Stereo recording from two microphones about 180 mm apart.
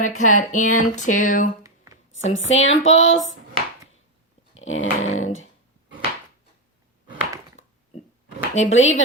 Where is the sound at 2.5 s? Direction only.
35° left (ahead or behind).